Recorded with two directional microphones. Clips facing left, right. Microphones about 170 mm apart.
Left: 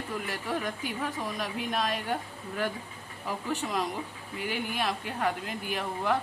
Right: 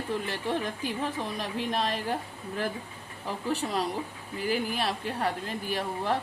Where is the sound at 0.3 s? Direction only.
30° right (ahead or behind).